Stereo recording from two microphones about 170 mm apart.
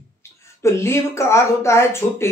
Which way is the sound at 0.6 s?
15° left (ahead or behind).